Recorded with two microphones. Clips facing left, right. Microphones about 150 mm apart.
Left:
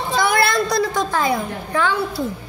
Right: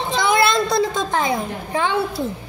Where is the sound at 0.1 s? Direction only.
20° right (ahead or behind).